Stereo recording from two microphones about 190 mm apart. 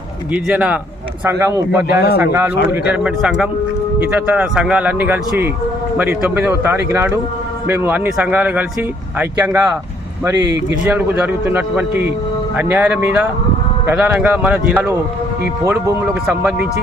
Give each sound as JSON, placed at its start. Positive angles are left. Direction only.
{"t": 0.4, "sound": "speech", "side_deg": -5}
{"t": 1.9, "sound": "a man's voice", "side_deg": 55}
{"t": 2.1, "sound": "speech", "side_deg": -10}
{"t": 10.8, "sound": "speech", "side_deg": -10}